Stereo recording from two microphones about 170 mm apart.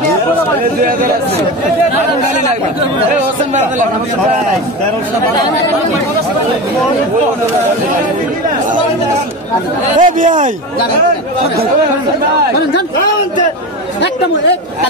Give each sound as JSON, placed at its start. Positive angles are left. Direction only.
{"t": 9.9, "sound": "speech", "side_deg": -50}